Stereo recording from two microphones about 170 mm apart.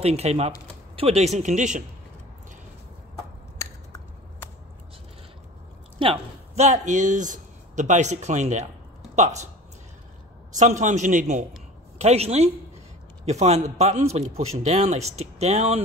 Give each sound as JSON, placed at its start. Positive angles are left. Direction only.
{"t": 0.0, "sound": "a man's voice", "side_deg": -35}
{"t": 3.5, "sound": "a sound", "side_deg": 20}
{"t": 5.9, "sound": "a man's voice", "side_deg": -35}
{"t": 10.5, "sound": "a man's voice", "side_deg": -45}